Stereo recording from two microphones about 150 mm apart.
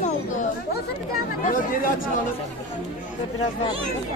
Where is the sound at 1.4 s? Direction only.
65° left (ahead or behind).